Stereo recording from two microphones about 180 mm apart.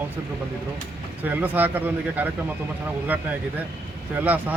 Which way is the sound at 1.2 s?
10° right (ahead or behind).